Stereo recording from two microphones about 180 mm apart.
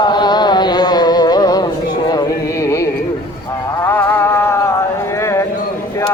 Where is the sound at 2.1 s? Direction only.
20° left (ahead or behind).